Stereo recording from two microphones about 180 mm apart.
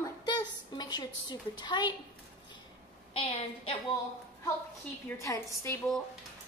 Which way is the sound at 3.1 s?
30° left (ahead or behind).